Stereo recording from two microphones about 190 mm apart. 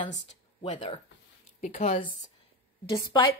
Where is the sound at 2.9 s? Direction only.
20° left (ahead or behind).